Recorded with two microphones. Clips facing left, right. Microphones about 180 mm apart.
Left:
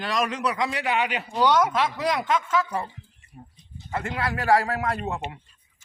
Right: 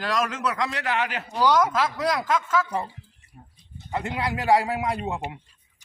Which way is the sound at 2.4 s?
5° right (ahead or behind).